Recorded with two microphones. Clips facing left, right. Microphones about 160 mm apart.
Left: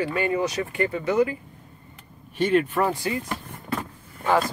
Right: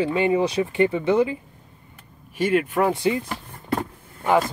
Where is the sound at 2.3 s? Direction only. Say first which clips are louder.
Even; 10° right (ahead or behind).